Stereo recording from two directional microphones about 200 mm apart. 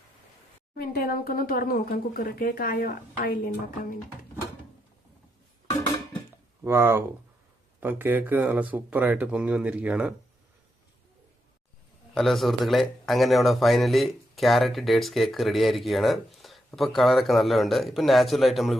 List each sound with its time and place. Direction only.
0.8 s speech: 45° left (ahead or behind)
6.7 s speech: 10° right (ahead or behind)
12.1 s a man's voice: centre (ahead or behind)